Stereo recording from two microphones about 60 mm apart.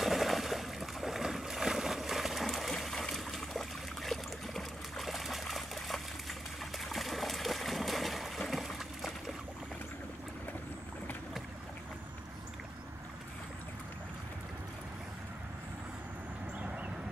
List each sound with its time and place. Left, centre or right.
0.0 s boat: centre
2.7 s trickle: centre
6.8 s a sound: centre
16.5 s vehicle: right